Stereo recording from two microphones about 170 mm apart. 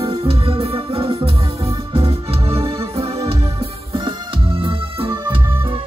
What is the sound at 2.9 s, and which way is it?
Organ, 35° right (ahead or behind).